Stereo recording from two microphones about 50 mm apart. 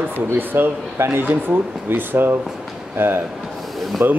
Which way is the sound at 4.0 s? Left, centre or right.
Right.